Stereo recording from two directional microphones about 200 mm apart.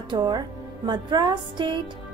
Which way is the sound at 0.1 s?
20° right (ahead or behind).